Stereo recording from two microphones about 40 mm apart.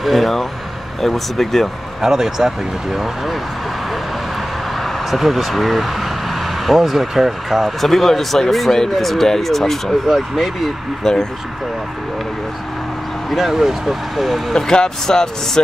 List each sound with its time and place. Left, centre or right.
0.0 s speech: centre
2.0 s speech: centre
4.7 s a sound: centre
5.2 s speech: centre
10.0 s speech: centre
11.1 s speech: centre
13.3 s speech: centre
14.5 s speech: centre